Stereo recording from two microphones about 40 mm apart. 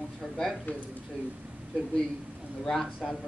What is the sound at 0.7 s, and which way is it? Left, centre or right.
Speech, left.